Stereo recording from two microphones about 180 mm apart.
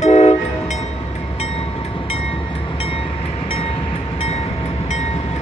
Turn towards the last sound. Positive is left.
turn(degrees=40)  # may be behind; listen again after turning